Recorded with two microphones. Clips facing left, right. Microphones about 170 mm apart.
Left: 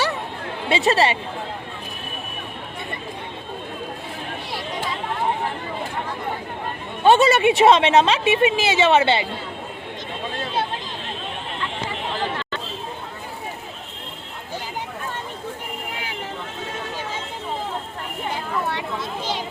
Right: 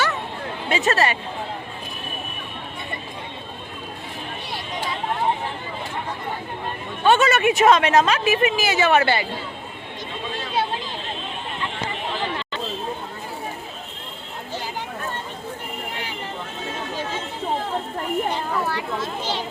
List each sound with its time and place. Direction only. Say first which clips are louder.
0.7 s a woman's voice: left 2 dB; 30° left (ahead or behind)
7.0 s a woman's voice: left 3 dB; 35° left (ahead or behind)